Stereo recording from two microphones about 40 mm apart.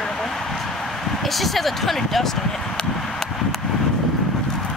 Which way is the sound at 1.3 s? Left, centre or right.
Centre.